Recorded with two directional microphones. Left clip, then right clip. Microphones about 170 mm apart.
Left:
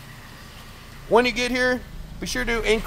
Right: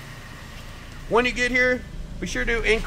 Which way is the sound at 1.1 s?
30° left (ahead or behind).